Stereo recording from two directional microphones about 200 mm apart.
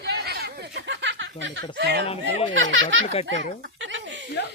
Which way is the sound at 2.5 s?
70° right (ahead or behind).